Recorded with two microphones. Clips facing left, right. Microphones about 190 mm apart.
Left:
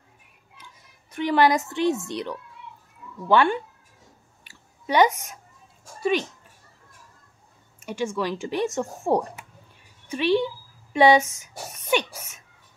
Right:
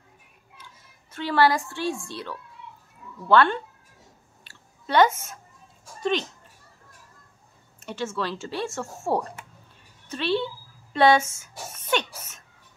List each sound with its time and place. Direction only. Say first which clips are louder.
1.1 s a woman's voice: left 2 dB; 15° left (ahead or behind)
4.5 s a sound: left 2 dB; 15° left (ahead or behind)
7.8 s speech: left 3 dB; 15° left (ahead or behind)